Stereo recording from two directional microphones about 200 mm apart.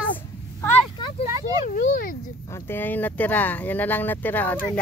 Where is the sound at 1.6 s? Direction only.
40° left (ahead or behind).